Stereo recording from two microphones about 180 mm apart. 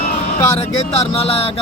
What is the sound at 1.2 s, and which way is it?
Speech, 35° left (ahead or behind).